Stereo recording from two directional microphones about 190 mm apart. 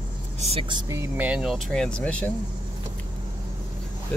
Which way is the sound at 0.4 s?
30° right (ahead or behind).